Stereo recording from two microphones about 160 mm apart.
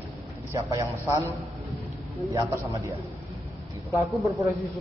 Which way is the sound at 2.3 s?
20° right (ahead or behind).